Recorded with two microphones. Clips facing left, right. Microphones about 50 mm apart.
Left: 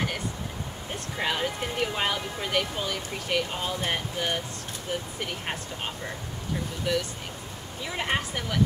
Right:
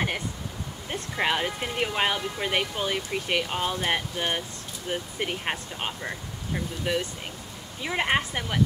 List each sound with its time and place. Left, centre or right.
1.1 s speech: right
6.9 s speech: right